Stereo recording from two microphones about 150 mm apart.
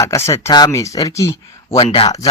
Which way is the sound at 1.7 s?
40° left (ahead or behind).